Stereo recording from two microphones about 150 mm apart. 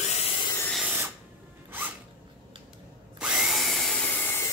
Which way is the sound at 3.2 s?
5° right (ahead or behind).